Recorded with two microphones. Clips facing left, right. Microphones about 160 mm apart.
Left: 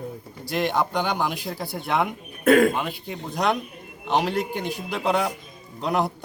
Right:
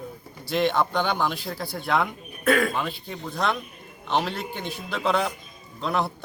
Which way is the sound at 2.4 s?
45° left (ahead or behind).